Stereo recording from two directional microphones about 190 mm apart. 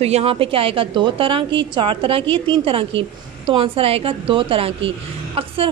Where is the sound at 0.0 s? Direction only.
35° right (ahead or behind).